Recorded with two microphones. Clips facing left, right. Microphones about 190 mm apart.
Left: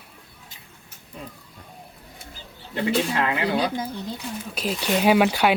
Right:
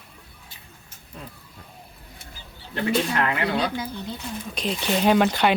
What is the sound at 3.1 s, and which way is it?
Speech, 20° left (ahead or behind).